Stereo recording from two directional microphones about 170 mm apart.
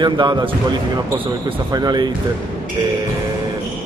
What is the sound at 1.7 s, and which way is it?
Speech, 25° right (ahead or behind).